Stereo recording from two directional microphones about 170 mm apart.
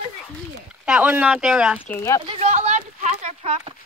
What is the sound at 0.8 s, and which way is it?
Speech, 5° right (ahead or behind).